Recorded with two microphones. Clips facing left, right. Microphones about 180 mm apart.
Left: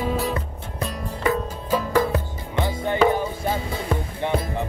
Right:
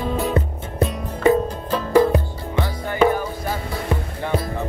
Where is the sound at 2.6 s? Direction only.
20° left (ahead or behind).